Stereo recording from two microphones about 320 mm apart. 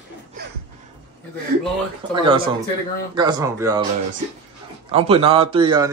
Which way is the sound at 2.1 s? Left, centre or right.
Centre.